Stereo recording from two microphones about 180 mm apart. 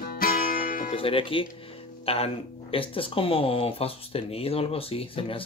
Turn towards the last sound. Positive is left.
turn(degrees=30)  # may be behind; listen again after turning